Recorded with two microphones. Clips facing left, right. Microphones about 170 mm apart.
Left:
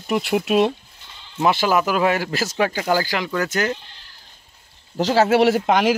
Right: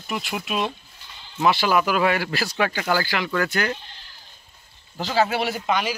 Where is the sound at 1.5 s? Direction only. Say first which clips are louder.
Left 1 dB; 45° left (ahead or behind).